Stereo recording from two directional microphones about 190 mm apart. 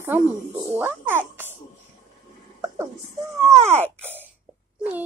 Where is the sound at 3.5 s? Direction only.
35° right (ahead or behind).